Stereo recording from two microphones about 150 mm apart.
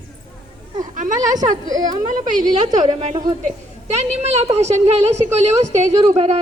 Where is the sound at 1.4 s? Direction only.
25° right (ahead or behind).